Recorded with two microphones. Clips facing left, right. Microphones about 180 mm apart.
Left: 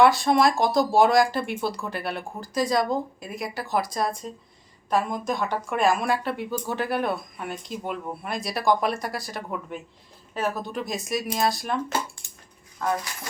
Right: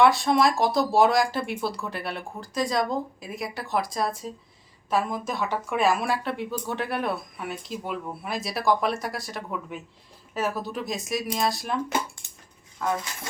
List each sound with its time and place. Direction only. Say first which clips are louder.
0.0 s speech: left 1 dB; centre (ahead or behind)
12.2 s dog: left 2 dB; 20° right (ahead or behind)